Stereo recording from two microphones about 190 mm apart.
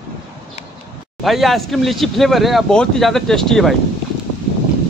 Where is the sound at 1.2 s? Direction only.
Centre (ahead or behind).